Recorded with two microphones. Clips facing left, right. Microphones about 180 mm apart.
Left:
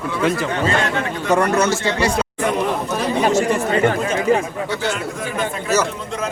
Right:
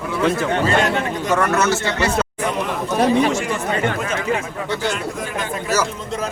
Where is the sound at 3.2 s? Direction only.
40° left (ahead or behind).